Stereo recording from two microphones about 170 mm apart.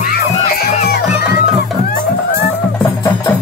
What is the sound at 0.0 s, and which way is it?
Music, 50° left (ahead or behind).